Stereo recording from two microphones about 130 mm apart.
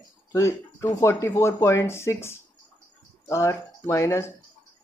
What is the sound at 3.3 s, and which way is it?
Speech, 20° left (ahead or behind).